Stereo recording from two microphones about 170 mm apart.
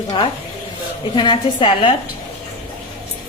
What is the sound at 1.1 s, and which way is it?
Speech, 30° left (ahead or behind).